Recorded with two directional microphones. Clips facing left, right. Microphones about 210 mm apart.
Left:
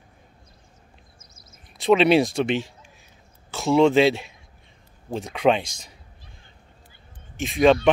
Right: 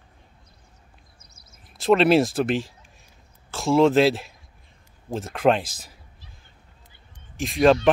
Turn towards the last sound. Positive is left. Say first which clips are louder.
# even
turn(degrees=0)  # may be behind; listen again after turning